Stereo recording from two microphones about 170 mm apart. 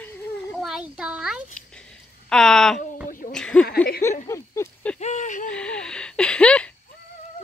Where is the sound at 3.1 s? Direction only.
50° left (ahead or behind).